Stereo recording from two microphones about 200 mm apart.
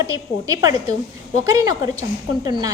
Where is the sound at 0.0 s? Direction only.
15° right (ahead or behind).